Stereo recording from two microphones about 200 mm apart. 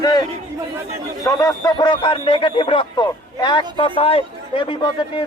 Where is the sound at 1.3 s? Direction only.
15° left (ahead or behind).